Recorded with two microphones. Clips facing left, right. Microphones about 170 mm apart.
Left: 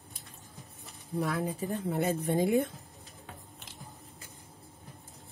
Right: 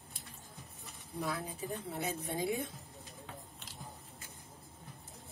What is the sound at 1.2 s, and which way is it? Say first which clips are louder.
Speech: left 7 dB; 65° left (ahead or behind).